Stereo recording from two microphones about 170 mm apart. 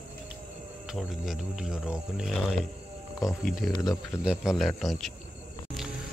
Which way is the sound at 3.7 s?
25° left (ahead or behind).